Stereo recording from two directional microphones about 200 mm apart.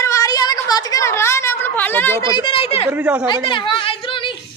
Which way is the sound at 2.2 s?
20° left (ahead or behind).